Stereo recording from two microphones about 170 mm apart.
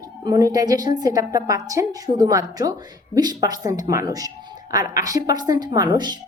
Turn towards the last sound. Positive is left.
turn(degrees=-25)  # may be behind; listen again after turning